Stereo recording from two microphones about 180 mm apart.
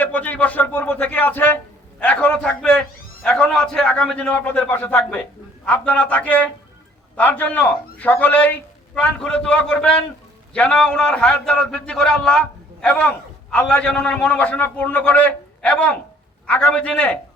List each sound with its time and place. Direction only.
0.0 s a man's voice: 10° left (ahead or behind)